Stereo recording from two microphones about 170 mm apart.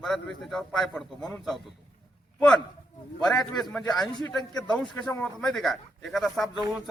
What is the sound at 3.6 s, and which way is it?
Speech, centre (ahead or behind).